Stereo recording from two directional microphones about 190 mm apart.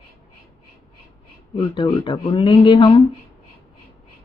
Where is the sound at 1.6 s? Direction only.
25° left (ahead or behind).